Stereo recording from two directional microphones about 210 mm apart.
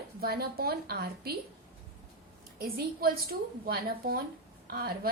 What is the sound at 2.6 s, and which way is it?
A woman's voice, 45° right (ahead or behind).